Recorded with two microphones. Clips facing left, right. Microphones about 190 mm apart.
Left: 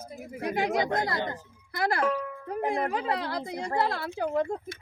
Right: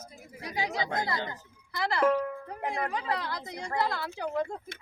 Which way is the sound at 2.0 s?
50° right (ahead or behind).